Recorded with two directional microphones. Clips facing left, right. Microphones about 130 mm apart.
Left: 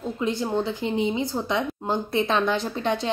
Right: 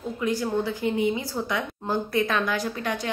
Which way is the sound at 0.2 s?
25° left (ahead or behind).